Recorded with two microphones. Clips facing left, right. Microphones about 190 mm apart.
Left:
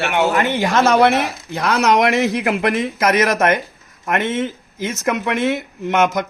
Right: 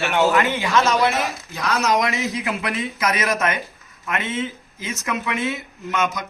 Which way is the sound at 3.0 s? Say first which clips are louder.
Left 6 dB; 65° left (ahead or behind).